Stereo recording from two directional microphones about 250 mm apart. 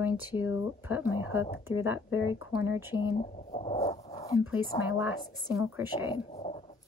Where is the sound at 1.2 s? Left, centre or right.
Left.